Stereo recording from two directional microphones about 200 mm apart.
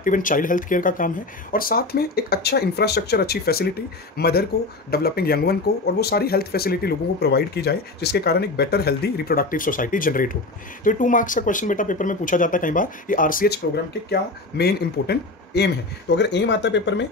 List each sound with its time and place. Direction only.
0.0 s speech: 40° left (ahead or behind)
14.6 s speech: 55° left (ahead or behind)